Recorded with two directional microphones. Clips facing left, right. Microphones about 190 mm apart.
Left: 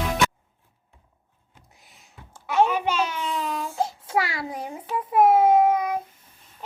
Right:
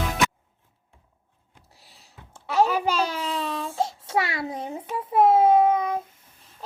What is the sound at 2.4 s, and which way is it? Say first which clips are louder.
Child singing: even; 35° right (ahead or behind).